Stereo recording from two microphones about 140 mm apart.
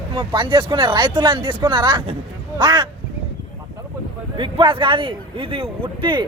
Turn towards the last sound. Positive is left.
turn(degrees=-35)  # may be behind; listen again after turning